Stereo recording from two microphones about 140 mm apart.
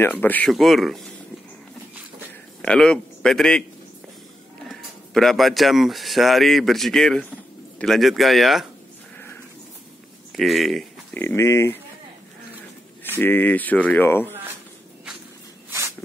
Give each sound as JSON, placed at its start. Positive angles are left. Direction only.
{"t": 0.0, "sound": "speech", "side_deg": 15}
{"t": 0.5, "sound": "speech", "side_deg": 0}
{"t": 2.6, "sound": "speech", "side_deg": 5}
{"t": 4.6, "sound": "speech", "side_deg": 0}
{"t": 10.3, "sound": "speech", "side_deg": 0}
{"t": 11.1, "sound": "speech", "side_deg": 15}
{"t": 13.2, "sound": "speech", "side_deg": 15}